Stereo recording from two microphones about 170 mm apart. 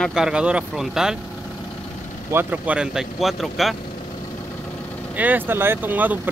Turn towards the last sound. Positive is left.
turn(degrees=-10)  # may be behind; listen again after turning